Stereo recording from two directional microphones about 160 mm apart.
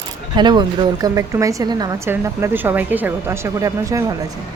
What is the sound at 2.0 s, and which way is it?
Speech, 15° right (ahead or behind).